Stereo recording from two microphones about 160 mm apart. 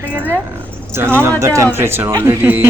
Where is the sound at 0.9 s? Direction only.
15° right (ahead or behind).